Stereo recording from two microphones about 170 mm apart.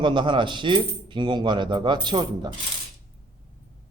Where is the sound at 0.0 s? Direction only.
30° right (ahead or behind).